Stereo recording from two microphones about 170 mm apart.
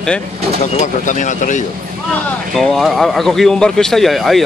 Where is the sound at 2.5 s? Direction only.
Centre (ahead or behind).